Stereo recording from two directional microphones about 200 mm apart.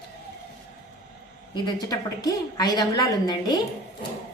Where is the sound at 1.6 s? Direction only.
20° left (ahead or behind).